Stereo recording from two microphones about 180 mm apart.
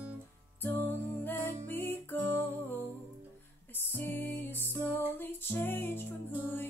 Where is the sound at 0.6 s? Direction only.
10° left (ahead or behind).